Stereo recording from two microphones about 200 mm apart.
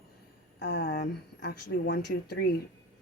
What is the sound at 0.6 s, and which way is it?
Speech, 60° left (ahead or behind).